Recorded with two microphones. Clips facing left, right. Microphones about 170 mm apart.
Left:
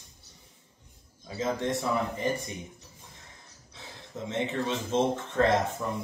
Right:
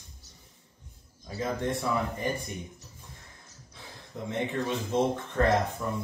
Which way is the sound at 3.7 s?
20° left (ahead or behind).